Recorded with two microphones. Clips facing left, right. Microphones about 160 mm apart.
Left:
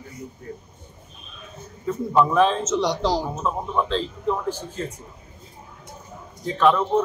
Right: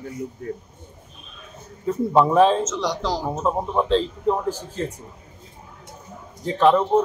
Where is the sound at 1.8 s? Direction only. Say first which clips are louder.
Right 2 dB; 35° right (ahead or behind).